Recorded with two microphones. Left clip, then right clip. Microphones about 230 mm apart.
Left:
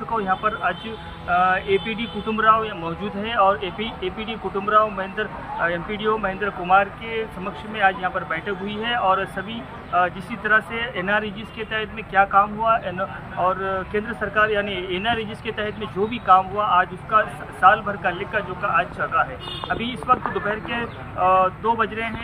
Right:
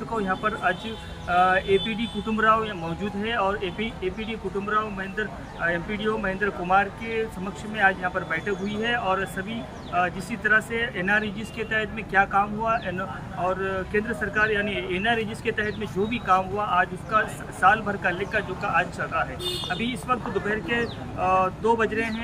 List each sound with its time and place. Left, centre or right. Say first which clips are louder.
0.1 s speech: left 4 dB; centre